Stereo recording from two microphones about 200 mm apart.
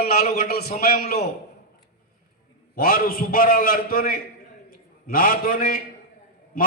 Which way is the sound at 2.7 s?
45° left (ahead or behind).